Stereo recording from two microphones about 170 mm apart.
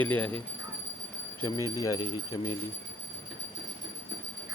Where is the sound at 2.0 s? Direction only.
25° left (ahead or behind).